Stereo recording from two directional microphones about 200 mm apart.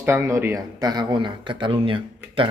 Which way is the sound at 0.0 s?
10° right (ahead or behind).